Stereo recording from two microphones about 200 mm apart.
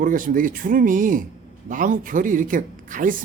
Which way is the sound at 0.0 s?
40° right (ahead or behind).